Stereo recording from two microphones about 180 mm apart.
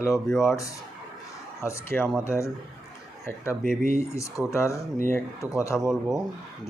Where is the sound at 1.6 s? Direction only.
15° left (ahead or behind).